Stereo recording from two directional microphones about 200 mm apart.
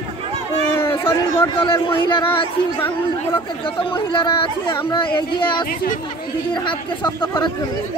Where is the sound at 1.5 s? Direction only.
25° left (ahead or behind).